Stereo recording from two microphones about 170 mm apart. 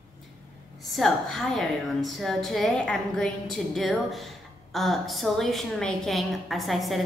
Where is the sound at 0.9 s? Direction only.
Centre (ahead or behind).